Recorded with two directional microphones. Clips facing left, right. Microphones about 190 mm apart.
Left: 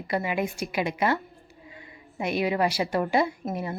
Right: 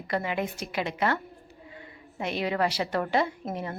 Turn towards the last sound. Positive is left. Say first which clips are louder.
# left 2 dB
turn(degrees=10)  # may be behind; listen again after turning